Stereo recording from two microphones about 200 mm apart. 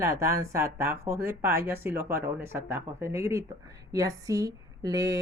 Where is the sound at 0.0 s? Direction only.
15° right (ahead or behind).